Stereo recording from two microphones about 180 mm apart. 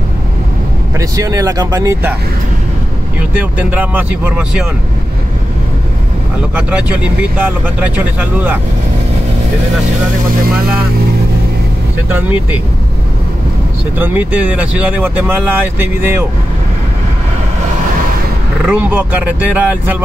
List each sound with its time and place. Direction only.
0.9 s speech: 20° right (ahead or behind)
3.2 s speech: 10° right (ahead or behind)
6.5 s speech: 5° right (ahead or behind)
13.9 s speech: 10° right (ahead or behind)
18.7 s speech: 10° right (ahead or behind)